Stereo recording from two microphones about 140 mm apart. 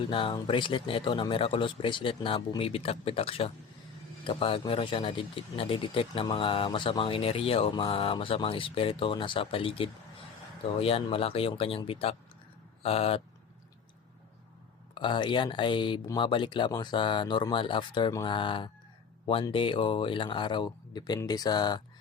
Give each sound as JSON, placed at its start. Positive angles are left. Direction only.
{"t": 0.1, "sound": "speech", "side_deg": 40}
{"t": 14.9, "sound": "speech", "side_deg": 35}